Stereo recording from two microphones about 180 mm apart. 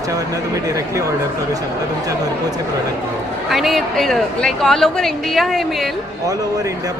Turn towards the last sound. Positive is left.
turn(degrees=0)  # may be behind; listen again after turning